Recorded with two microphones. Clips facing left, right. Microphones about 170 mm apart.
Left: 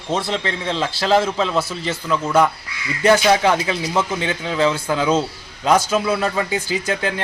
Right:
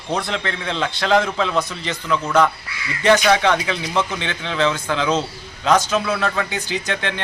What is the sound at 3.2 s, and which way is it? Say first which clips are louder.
Speech: left 1 dB; 30° left (ahead or behind).